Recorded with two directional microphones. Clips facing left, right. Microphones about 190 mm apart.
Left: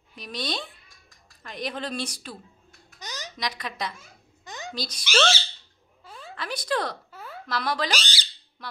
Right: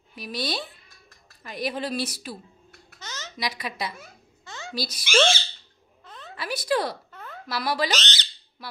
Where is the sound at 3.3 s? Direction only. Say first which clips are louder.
Right 2 dB; 10° right (ahead or behind).